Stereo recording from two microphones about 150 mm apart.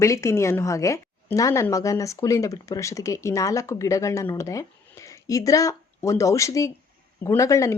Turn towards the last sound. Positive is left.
turn(degrees=20)  # may be behind; listen again after turning